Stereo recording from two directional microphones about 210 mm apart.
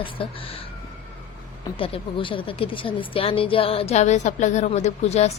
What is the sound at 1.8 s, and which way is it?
Speech, 25° left (ahead or behind).